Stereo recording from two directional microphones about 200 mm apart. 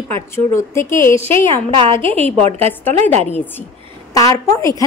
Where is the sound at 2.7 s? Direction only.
10° left (ahead or behind).